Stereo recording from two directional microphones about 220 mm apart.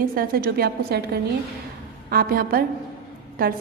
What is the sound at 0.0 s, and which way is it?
A woman's voice, 40° right (ahead or behind).